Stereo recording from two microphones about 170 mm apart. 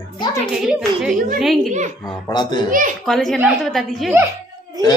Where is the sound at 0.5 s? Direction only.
5° right (ahead or behind).